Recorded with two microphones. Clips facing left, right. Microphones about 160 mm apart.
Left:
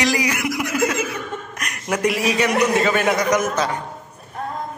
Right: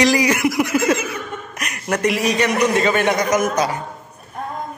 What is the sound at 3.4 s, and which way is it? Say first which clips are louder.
Speech: right 2 dB; 10° right (ahead or behind).